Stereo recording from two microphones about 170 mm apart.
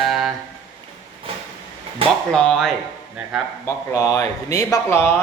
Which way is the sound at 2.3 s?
5° left (ahead or behind).